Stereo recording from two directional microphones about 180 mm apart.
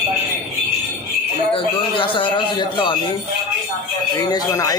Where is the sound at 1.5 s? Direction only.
25° left (ahead or behind).